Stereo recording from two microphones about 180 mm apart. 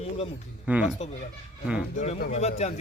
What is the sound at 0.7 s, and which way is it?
Speech, 10° right (ahead or behind).